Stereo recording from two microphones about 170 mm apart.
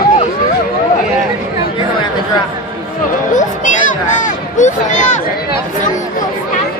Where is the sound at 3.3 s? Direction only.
45° left (ahead or behind).